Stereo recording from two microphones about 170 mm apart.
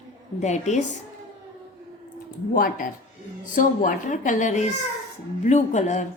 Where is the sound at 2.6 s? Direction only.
55° left (ahead or behind).